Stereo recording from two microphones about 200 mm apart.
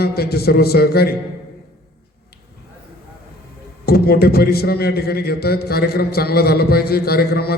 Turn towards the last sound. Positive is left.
turn(degrees=50)  # may be behind; listen again after turning